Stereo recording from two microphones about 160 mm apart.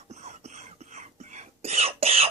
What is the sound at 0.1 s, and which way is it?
Cough, 45° right (ahead or behind).